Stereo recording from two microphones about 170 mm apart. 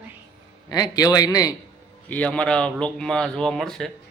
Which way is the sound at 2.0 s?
10° left (ahead or behind).